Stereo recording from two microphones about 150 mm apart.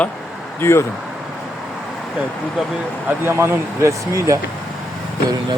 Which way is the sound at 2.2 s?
5° right (ahead or behind).